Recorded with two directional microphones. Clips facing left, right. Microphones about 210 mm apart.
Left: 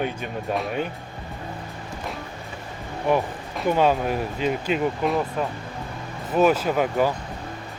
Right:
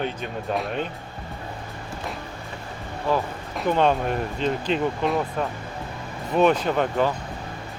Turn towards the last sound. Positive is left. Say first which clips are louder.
# left 1 dB
turn(degrees=5)  # may be behind; listen again after turning